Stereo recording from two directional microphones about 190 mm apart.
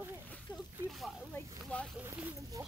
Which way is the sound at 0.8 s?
Centre (ahead or behind).